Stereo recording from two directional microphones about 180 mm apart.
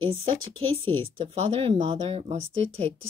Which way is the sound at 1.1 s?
30° right (ahead or behind).